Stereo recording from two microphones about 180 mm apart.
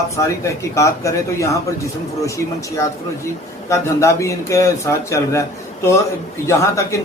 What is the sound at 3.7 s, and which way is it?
Speech, 15° left (ahead or behind).